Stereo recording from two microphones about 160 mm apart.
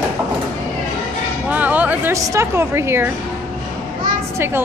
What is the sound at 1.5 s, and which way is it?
Music, 10° right (ahead or behind).